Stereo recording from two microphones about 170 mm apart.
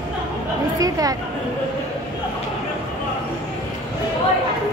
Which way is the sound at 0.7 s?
20° right (ahead or behind).